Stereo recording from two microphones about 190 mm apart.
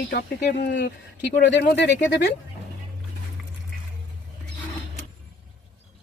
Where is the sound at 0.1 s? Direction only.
60° left (ahead or behind).